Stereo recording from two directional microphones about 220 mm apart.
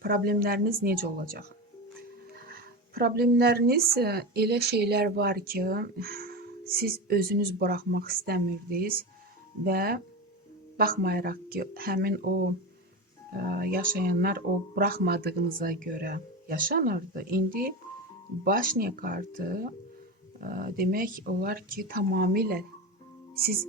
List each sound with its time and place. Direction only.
0.0 s speech: 40° right (ahead or behind)
2.5 s speech: 45° right (ahead or behind)
13.3 s speech: 40° right (ahead or behind)